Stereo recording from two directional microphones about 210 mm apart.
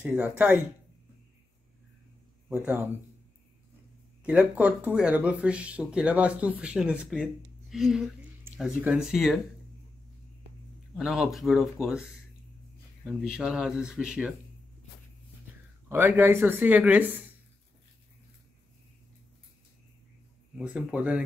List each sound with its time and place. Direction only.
0.0 s speech: 5° right (ahead or behind)
2.5 s speech: 10° right (ahead or behind)
4.2 s speech: 5° right (ahead or behind)
11.0 s speech: centre (ahead or behind)
15.9 s speech: 10° right (ahead or behind)
20.5 s speech: 5° right (ahead or behind)